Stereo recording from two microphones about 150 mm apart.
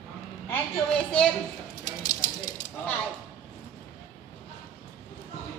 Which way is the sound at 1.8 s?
30° left (ahead or behind).